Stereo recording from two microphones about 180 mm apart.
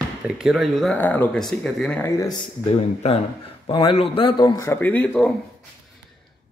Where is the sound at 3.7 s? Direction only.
30° left (ahead or behind); by 5.3 s 5° left (ahead or behind).